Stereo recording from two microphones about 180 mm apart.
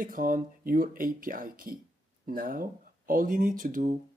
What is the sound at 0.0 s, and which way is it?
Speech, 50° right (ahead or behind).